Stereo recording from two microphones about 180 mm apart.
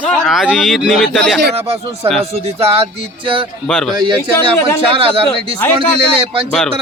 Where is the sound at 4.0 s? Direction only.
25° right (ahead or behind).